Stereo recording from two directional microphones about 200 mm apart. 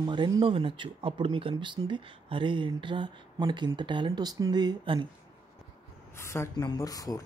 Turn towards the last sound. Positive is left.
turn(degrees=20)  # may be behind; listen again after turning